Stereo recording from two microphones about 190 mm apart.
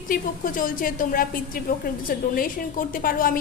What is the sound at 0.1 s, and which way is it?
A woman's voice, 45° left (ahead or behind).